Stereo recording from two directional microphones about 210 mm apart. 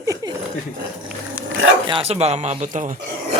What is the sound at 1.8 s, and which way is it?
Speech, 25° right (ahead or behind).